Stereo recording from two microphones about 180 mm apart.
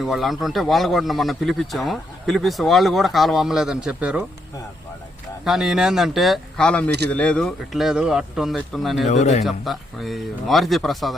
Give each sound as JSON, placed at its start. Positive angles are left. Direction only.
{"t": 0.0, "sound": "a man's voice", "side_deg": 0}
{"t": 5.5, "sound": "a man's voice", "side_deg": 0}
{"t": 9.0, "sound": "speech", "side_deg": 40}
{"t": 9.4, "sound": "a man's voice", "side_deg": 0}